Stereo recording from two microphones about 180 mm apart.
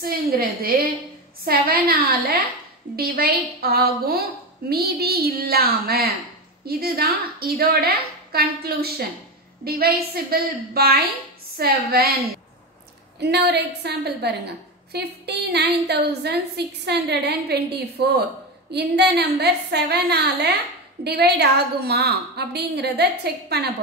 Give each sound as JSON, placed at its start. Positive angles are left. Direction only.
{"t": 0.0, "sound": "a woman's voice", "side_deg": -55}
{"t": 13.2, "sound": "a woman's voice", "side_deg": -65}